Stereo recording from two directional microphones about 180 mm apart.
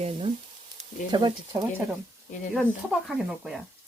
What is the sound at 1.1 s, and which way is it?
Speech, 25° right (ahead or behind).